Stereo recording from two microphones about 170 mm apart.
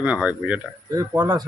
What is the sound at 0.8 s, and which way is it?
Speech, 20° right (ahead or behind).